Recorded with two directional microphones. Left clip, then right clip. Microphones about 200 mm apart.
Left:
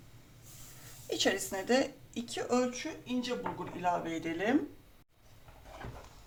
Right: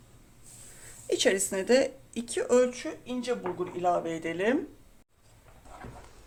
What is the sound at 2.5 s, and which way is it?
Speech, 45° right (ahead or behind).